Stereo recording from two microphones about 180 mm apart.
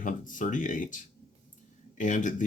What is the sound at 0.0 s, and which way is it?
Speech, 45° left (ahead or behind).